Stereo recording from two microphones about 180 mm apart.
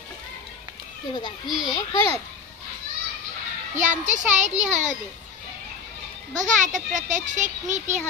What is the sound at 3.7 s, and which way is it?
A child's voice, 45° right (ahead or behind).